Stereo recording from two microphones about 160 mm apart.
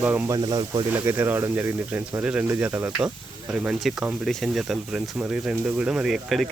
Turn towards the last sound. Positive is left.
turn(degrees=0)  # may be behind; listen again after turning